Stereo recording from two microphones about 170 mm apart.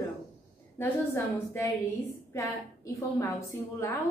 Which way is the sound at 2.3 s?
20° left (ahead or behind).